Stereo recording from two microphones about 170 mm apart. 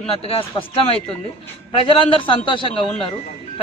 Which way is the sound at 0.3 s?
35° left (ahead or behind).